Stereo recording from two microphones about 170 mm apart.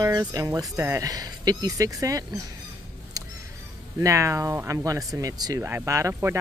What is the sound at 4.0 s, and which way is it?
Speech, 20° right (ahead or behind).